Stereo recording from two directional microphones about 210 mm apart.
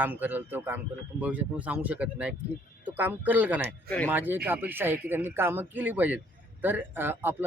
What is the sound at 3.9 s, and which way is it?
Speech, 5° left (ahead or behind).